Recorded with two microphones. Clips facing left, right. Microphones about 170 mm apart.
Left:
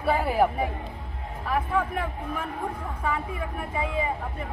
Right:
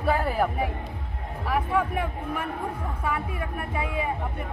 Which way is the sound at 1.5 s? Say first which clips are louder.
Right 1 dB; 10° right (ahead or behind).